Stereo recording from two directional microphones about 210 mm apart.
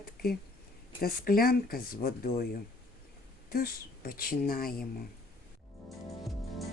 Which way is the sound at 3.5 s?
45° left (ahead or behind).